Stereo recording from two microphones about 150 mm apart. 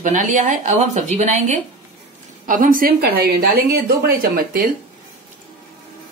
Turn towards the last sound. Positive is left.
turn(degrees=-85)